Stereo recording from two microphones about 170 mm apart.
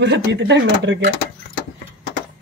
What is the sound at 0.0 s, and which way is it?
Speech, 90° right.